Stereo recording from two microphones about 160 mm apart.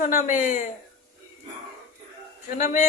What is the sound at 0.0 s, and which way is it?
Speech, 55° left (ahead or behind).